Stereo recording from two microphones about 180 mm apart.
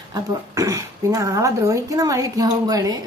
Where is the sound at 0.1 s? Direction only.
15° right (ahead or behind).